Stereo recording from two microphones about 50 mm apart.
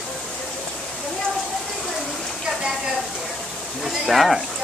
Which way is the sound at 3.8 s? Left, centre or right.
Centre.